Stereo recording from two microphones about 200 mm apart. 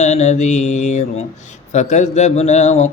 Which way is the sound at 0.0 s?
35° left (ahead or behind).